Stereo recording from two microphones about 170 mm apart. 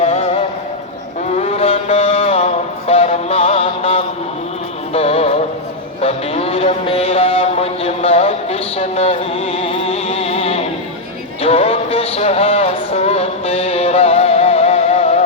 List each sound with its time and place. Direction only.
0.0 s music: 40° left (ahead or behind)
1.4 s mantra: 35° left (ahead or behind)
4.9 s music: 35° left (ahead or behind)